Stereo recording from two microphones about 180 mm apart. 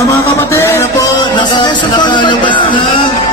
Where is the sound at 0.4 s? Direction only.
15° left (ahead or behind).